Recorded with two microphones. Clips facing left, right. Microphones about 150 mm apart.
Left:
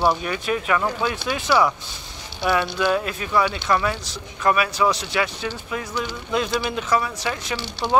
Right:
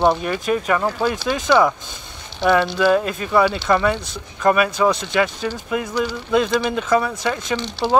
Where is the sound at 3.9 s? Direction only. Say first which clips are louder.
Right 6 dB; 50° right (ahead or behind).